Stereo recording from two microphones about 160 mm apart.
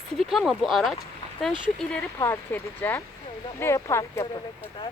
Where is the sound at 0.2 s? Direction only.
Centre (ahead or behind).